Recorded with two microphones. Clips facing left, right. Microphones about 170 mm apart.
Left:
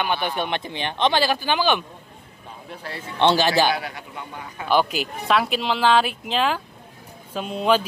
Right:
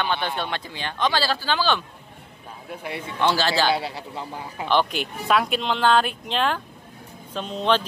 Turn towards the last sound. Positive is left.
turn(degrees=10)  # may be behind; listen again after turning